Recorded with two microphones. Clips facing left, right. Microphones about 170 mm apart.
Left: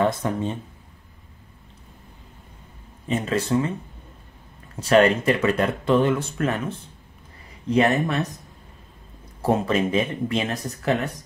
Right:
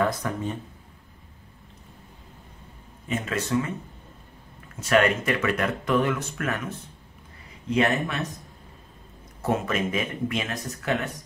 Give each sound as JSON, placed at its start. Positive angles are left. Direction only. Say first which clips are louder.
{"t": 0.0, "sound": "speech", "louder": "left 3 dB", "side_deg": 25}
{"t": 3.1, "sound": "speech", "louder": "left 4 dB", "side_deg": 30}
{"t": 4.7, "sound": "speech", "louder": "left 4 dB", "side_deg": 30}
{"t": 7.7, "sound": "speech", "louder": "left 4 dB", "side_deg": 35}
{"t": 9.4, "sound": "speech", "louder": "left 4 dB", "side_deg": 30}